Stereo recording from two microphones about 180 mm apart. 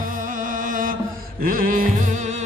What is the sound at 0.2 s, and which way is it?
Music, 45° right (ahead or behind).